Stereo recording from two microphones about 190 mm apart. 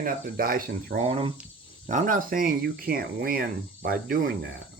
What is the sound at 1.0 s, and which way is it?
Speech, 35° right (ahead or behind).